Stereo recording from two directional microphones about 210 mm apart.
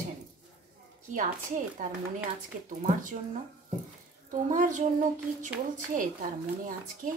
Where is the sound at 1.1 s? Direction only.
40° right (ahead or behind).